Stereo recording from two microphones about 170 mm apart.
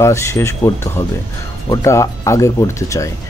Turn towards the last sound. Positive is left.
turn(degrees=15)  # may be behind; listen again after turning